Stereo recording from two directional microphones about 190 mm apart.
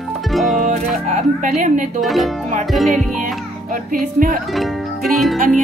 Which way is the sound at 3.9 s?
45° right (ahead or behind).